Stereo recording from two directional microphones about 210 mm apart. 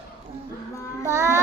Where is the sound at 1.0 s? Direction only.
15° right (ahead or behind).